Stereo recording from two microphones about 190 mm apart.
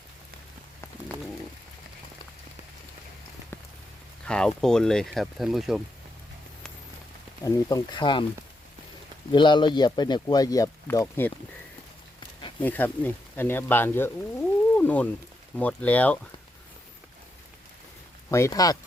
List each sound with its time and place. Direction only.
3.5 s rain on surface: 10° left (ahead or behind)
4.3 s speech: 5° left (ahead or behind)
7.4 s speech: 20° left (ahead or behind)
9.3 s speech: 25° left (ahead or behind)
12.6 s speech: 10° left (ahead or behind)
18.3 s speech: 15° left (ahead or behind)